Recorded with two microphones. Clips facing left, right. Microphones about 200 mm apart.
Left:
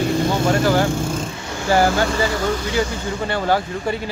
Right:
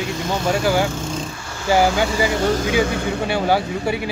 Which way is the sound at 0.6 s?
10° right (ahead or behind).